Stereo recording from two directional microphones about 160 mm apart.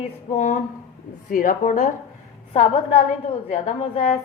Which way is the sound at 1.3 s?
60° left (ahead or behind).